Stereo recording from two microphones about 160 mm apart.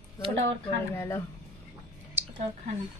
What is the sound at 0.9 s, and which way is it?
Speech, 15° left (ahead or behind).